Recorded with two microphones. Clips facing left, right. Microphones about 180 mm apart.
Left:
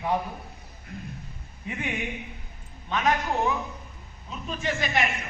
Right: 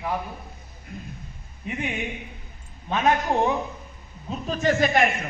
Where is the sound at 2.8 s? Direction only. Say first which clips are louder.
Right 3 dB; 30° right (ahead or behind).